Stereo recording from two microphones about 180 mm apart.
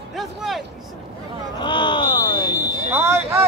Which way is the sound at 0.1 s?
Centre (ahead or behind).